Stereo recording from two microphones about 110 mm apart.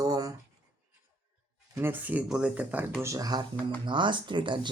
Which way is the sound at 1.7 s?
20° right (ahead or behind).